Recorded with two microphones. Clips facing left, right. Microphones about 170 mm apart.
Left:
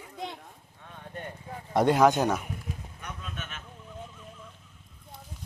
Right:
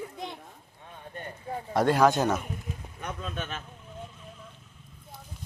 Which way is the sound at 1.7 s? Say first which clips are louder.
Left 1 dB; 20° left (ahead or behind).